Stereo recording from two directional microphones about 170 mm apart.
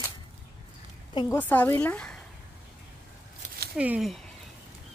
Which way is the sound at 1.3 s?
10° left (ahead or behind).